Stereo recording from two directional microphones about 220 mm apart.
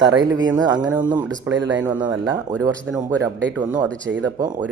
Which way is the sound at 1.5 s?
55° right (ahead or behind).